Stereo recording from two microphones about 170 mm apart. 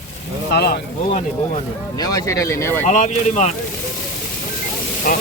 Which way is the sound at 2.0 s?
20° left (ahead or behind).